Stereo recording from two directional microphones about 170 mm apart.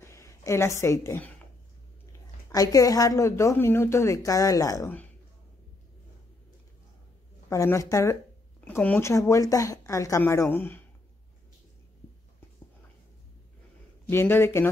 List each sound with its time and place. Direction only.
0.0 s a sound: 15° left (ahead or behind)
2.5 s a woman's voice: 20° left (ahead or behind)
7.4 s speech: 15° left (ahead or behind)
14.0 s speech: 10° left (ahead or behind)